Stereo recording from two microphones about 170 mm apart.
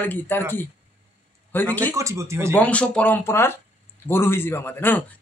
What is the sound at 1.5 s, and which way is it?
Speech, 10° left (ahead or behind).